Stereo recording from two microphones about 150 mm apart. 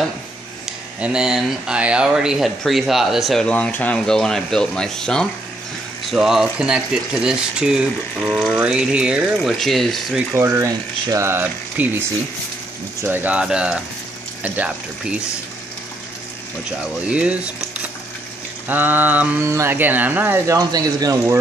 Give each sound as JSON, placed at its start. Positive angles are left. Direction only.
{"t": 0.7, "sound": "speech", "side_deg": -5}
{"t": 10.3, "sound": "speech", "side_deg": -20}
{"t": 13.0, "sound": "speech", "side_deg": -15}
{"t": 17.1, "sound": "speech", "side_deg": -5}